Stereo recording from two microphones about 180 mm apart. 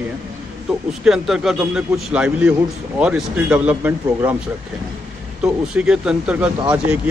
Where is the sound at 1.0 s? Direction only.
Centre (ahead or behind).